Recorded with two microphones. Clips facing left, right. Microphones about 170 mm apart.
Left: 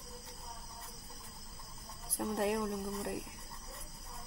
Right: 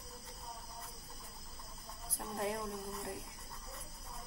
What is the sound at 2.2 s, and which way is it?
Music, 75° left (ahead or behind).